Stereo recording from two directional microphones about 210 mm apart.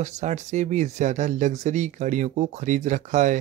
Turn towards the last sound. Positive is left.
turn(degrees=-35)  # may be behind; listen again after turning